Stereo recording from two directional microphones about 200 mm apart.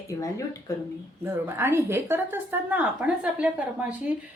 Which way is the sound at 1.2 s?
10° right (ahead or behind).